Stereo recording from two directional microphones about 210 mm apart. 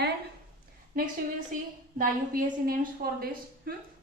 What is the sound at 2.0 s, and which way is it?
A woman's voice, 40° right (ahead or behind).